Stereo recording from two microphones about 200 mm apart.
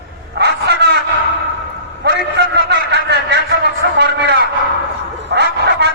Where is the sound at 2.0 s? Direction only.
55° right (ahead or behind).